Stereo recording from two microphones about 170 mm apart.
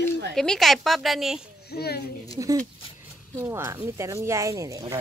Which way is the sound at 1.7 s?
70° left (ahead or behind).